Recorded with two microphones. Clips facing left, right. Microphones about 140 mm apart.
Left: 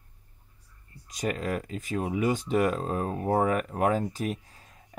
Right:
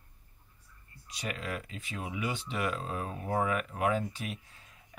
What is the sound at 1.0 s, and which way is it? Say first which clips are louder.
Speech: left 8 dB; 40° left (ahead or behind).